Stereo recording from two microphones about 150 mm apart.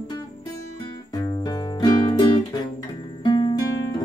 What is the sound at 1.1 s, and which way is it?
Music, 20° left (ahead or behind).